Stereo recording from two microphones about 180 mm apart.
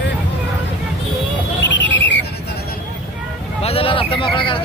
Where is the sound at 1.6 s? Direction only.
85° left.